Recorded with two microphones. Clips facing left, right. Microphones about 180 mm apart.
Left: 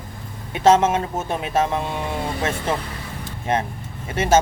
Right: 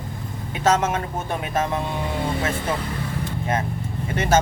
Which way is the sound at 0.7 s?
25° left (ahead or behind).